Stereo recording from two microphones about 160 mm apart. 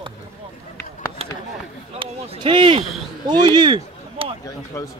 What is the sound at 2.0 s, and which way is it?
Speech, 35° right (ahead or behind).